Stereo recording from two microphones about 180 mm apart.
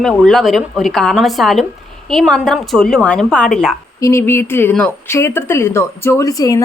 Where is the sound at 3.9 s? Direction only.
15° left (ahead or behind).